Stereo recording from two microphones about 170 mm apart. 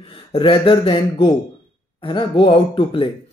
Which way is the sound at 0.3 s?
30° left (ahead or behind).